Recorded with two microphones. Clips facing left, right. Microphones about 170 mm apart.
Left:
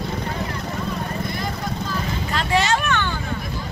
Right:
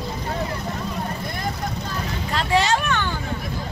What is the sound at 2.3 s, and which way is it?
Vehicle, 35° right (ahead or behind).